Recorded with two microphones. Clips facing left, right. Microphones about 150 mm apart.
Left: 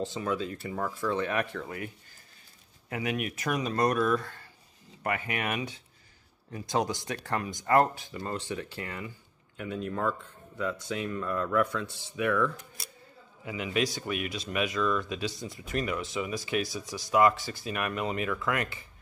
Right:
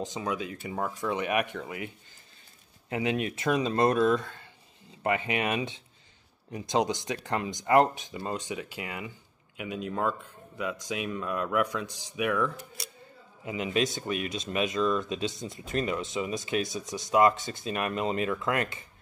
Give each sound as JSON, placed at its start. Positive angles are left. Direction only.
{"t": 0.0, "sound": "speech", "side_deg": -15}
{"t": 2.9, "sound": "speech", "side_deg": -25}
{"t": 13.5, "sound": "speech", "side_deg": -25}